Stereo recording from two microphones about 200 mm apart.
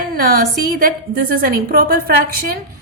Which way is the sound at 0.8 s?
45° right (ahead or behind).